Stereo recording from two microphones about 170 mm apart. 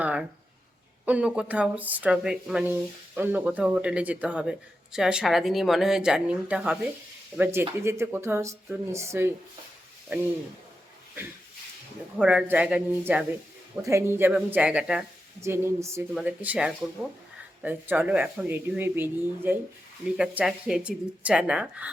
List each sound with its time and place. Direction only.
0.0 s a sound: 10° right (ahead or behind)
1.0 s speech: 5° right (ahead or behind)
12.2 s speech: 5° right (ahead or behind)